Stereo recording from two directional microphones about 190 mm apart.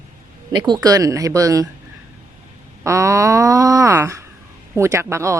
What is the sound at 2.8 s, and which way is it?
Speech, 15° right (ahead or behind).